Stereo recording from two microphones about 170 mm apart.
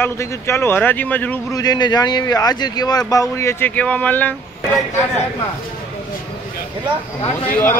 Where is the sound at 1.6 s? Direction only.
25° left (ahead or behind).